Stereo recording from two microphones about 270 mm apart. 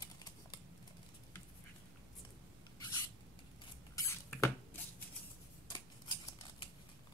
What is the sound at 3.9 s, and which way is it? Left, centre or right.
Cutlery, centre.